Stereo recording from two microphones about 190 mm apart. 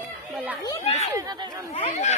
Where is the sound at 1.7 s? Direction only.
35° left (ahead or behind).